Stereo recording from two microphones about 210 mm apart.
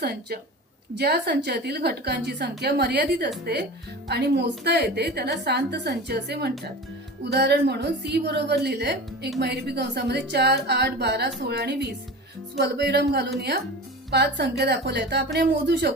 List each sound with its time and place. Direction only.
0.0 s a woman's voice: 50° right (ahead or behind)